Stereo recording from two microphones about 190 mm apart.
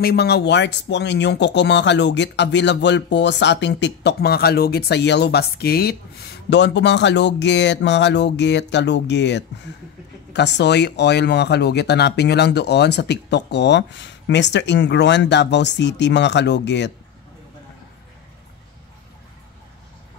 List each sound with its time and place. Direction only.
0.0 s speech: 60° left (ahead or behind)